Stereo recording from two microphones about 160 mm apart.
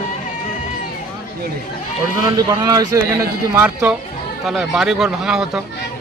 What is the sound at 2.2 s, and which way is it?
A man's voice, 25° right (ahead or behind).